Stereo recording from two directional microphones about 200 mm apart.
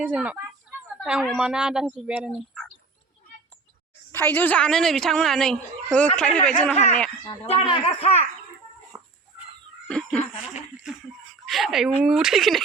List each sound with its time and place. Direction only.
0.0 s a woman's voice: 5° right (ahead or behind)
4.1 s a woman's voice: 10° left (ahead or behind)
7.4 s speech: 30° left (ahead or behind)
9.8 s a sound: 5° left (ahead or behind)
11.4 s a woman's voice: centre (ahead or behind)